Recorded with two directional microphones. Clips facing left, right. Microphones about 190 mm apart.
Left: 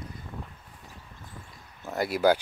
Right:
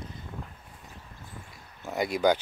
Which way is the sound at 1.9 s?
5° left (ahead or behind).